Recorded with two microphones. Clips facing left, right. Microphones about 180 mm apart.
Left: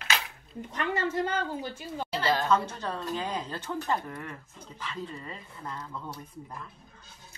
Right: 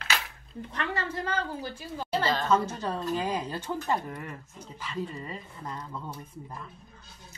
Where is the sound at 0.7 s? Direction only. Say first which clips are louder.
Left 4 dB; 20° left (ahead or behind).